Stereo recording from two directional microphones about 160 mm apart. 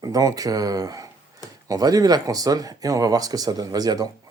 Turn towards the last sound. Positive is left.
turn(degrees=-25)  # may be behind; listen again after turning